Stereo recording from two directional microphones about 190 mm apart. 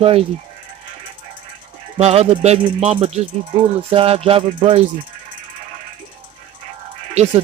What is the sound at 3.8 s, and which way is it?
Speech, 30° right (ahead or behind).